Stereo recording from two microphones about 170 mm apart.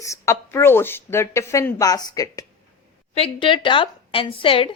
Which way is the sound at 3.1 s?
30° left (ahead or behind).